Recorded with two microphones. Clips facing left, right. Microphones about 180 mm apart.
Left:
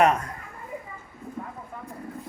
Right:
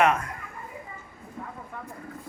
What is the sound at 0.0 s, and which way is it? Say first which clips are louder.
Speech: left 2 dB; 35° left (ahead or behind).